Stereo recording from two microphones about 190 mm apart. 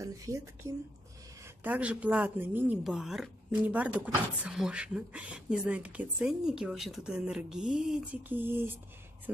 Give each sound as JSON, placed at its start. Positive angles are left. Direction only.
{"t": 0.0, "sound": "a woman's voice", "side_deg": -15}